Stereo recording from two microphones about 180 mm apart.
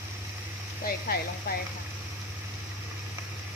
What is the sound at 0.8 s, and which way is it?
Speech, 55° left (ahead or behind).